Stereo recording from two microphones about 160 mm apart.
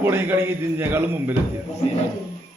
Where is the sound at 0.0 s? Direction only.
15° right (ahead or behind).